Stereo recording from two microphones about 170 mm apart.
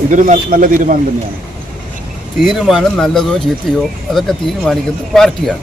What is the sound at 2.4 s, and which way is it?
Speech, centre (ahead or behind).